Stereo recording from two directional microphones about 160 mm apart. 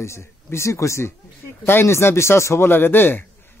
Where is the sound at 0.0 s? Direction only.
15° left (ahead or behind).